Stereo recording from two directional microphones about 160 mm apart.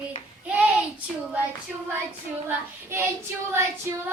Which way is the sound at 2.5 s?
15° right (ahead or behind).